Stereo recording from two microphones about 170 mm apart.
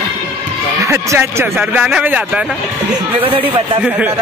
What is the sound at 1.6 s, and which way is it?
Speech, 5° right (ahead or behind).